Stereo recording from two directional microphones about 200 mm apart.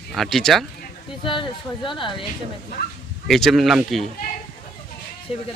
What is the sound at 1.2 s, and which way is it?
Speech, 25° left (ahead or behind).